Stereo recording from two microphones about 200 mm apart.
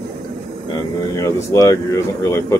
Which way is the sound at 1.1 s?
15° left (ahead or behind).